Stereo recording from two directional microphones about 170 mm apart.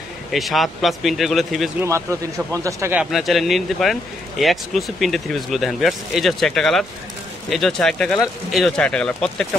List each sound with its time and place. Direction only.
0.3 s speech: centre (ahead or behind)
1.8 s speech: 15° right (ahead or behind)
3.0 s speech: centre (ahead or behind)